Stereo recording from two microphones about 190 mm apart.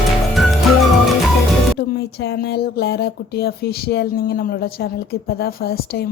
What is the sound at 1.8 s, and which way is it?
A woman's voice, 55° left (ahead or behind).